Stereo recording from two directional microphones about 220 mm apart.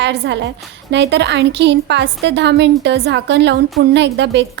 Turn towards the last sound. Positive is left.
turn(degrees=-55)  # may be behind; listen again after turning